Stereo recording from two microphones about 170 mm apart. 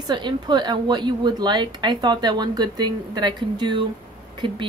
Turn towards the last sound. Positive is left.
turn(degrees=-30)  # may be behind; listen again after turning